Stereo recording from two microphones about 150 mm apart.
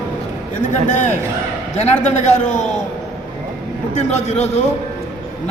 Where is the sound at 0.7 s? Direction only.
55° left (ahead or behind).